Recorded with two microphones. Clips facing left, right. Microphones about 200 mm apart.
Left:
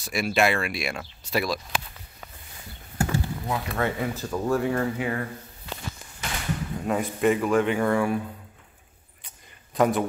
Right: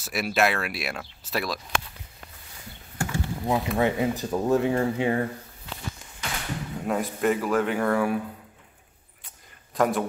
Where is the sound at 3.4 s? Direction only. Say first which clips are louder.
Right 7 dB; 20° right (ahead or behind).